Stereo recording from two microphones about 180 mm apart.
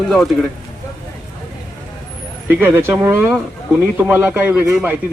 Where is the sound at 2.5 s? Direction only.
10° right (ahead or behind).